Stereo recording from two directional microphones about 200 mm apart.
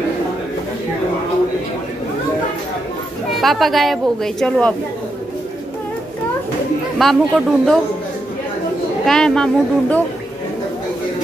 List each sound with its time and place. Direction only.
3.3 s speech: centre (ahead or behind)
7.0 s speech: centre (ahead or behind)
9.0 s speech: 5° left (ahead or behind)